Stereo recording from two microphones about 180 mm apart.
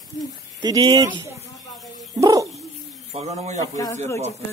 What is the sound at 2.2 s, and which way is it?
Dog, 20° right (ahead or behind).